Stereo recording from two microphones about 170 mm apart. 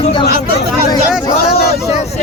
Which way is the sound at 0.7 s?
Centre (ahead or behind).